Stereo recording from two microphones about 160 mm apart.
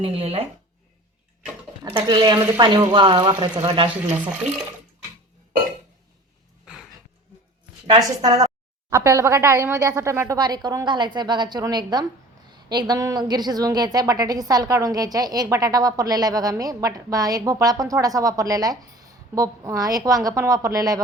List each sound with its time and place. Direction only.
0.0 s speech: 40° right (ahead or behind)
1.8 s a woman's voice: 30° right (ahead or behind)
3.8 s speech: 10° right (ahead or behind)
7.9 s a woman's voice: 25° right (ahead or behind)